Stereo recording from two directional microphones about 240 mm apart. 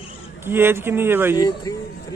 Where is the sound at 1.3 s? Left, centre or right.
Centre.